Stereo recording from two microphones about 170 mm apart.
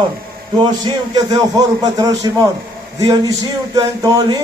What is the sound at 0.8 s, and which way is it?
Speech, 25° right (ahead or behind).